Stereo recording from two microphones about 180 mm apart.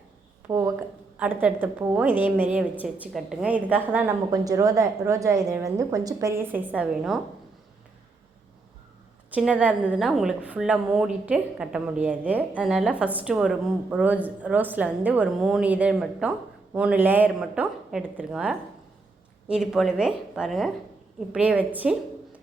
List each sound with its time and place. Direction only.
0.4 s a woman's voice: 15° right (ahead or behind)
6.7 s a woman's voice: 5° right (ahead or behind)
9.3 s a woman's voice: 5° right (ahead or behind)